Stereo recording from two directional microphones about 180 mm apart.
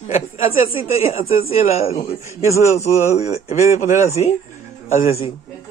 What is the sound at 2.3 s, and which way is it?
Speech, 15° right (ahead or behind).